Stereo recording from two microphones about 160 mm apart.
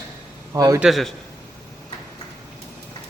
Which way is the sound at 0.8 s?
Centre (ahead or behind).